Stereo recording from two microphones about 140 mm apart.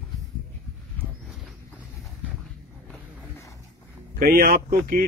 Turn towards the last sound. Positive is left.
turn(degrees=-90)